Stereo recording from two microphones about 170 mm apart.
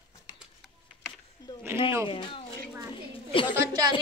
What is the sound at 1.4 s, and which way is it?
A woman's voice, 20° left (ahead or behind).